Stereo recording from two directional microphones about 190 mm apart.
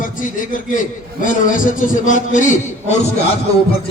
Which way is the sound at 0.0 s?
45° left (ahead or behind).